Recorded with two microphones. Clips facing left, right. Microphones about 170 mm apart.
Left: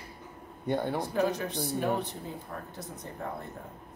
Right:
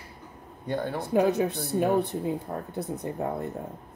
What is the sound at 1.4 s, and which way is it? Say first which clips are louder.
Speech: right 5 dB; 55° right (ahead or behind).